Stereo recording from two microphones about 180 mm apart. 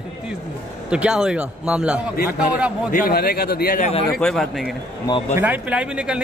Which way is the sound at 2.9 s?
55° left (ahead or behind).